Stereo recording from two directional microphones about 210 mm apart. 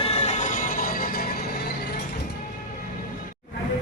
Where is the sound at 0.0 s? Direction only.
30° left (ahead or behind).